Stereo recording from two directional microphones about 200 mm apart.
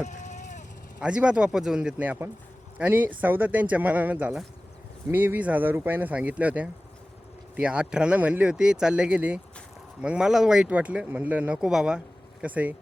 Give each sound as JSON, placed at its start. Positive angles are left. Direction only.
{"t": 0.0, "sound": "vehicle", "side_deg": 35}
{"t": 0.9, "sound": "speech", "side_deg": -5}